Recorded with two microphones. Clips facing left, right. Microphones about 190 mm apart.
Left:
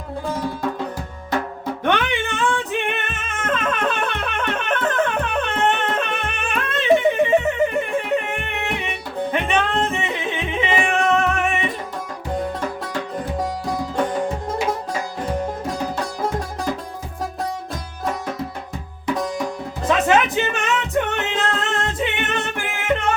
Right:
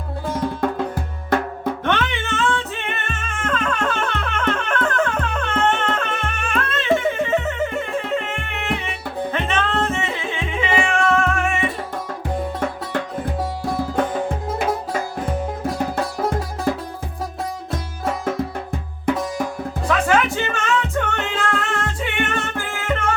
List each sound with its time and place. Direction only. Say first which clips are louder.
1.3 s music: right 3 dB; 55° right (ahead or behind)
1.8 s music: left 5 dB; 15° left (ahead or behind)
19.1 s music: right 2 dB; 55° right (ahead or behind)
19.9 s music: left 1 dB; 20° left (ahead or behind)